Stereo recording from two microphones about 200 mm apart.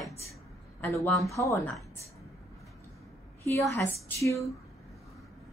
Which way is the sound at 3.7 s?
15° left (ahead or behind).